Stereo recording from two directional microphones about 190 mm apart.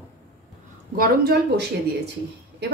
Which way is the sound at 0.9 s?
55° right (ahead or behind).